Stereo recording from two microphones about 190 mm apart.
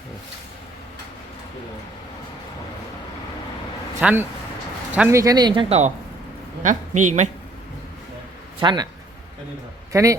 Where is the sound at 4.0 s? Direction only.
10° right (ahead or behind); by 7.3 s 40° right (ahead or behind).